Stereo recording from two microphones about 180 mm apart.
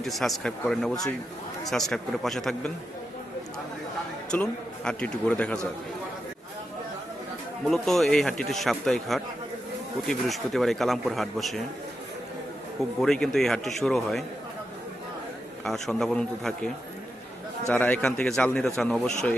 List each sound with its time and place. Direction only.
0.0 s a man's voice: centre (ahead or behind)
4.3 s a man's voice: 5° left (ahead or behind)
7.7 s a man's voice: centre (ahead or behind)
13.0 s a man's voice: 5° left (ahead or behind)
15.6 s a man's voice: centre (ahead or behind)